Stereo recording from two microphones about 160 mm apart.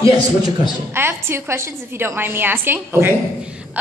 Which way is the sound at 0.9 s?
15° right (ahead or behind).